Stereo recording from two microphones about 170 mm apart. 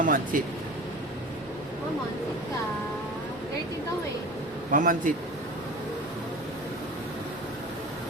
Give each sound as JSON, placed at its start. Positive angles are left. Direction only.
{"t": 0.0, "sound": "a man's voice", "side_deg": -50}
{"t": 4.7, "sound": "a man's voice", "side_deg": -50}